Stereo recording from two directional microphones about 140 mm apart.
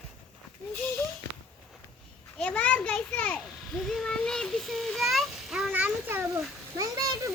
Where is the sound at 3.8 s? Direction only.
Centre (ahead or behind); by 7.3 s 25° right (ahead or behind).